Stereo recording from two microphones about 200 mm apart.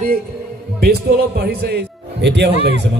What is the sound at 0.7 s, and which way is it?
A man's voice, 55° right (ahead or behind).